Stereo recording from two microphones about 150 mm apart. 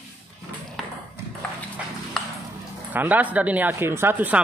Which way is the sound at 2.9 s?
10° right (ahead or behind).